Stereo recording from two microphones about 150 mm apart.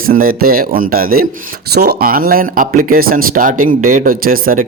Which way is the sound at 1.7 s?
90° right.